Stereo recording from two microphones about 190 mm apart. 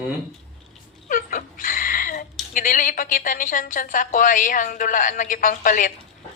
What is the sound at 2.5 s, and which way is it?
A woman's voice, 45° left (ahead or behind).